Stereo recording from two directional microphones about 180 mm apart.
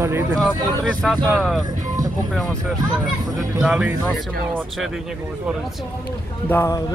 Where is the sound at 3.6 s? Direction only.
5° right (ahead or behind).